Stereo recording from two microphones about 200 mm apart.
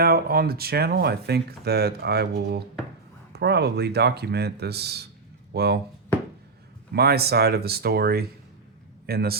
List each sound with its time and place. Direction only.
0.0 s speech: 50° right (ahead or behind)
6.9 s speech: 50° right (ahead or behind)